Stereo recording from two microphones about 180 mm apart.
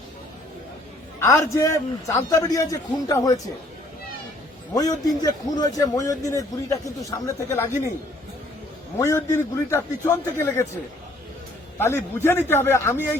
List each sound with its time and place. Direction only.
1.2 s a man's voice: 15° left (ahead or behind)
4.7 s a man's voice: 20° left (ahead or behind)
9.0 s a man's voice: 15° left (ahead or behind)
11.8 s a man's voice: 15° left (ahead or behind)